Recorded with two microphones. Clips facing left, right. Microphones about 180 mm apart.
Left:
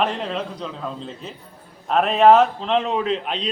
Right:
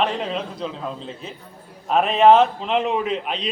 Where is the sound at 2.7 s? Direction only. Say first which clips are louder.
Left 1 dB; 10° right (ahead or behind).